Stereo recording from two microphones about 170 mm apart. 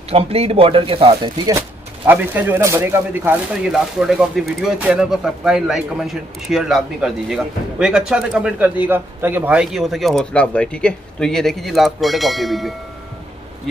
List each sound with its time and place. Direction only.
0.1 s speech: 35° right (ahead or behind)
2.0 s speech: 10° right (ahead or behind)